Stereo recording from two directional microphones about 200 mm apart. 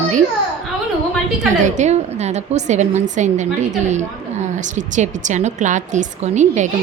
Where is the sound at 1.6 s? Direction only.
35° right (ahead or behind).